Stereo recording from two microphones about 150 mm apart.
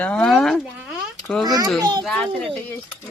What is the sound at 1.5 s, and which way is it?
Speech, 25° right (ahead or behind).